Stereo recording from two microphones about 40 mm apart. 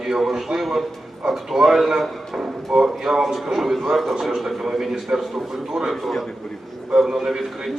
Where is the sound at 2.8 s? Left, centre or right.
Centre.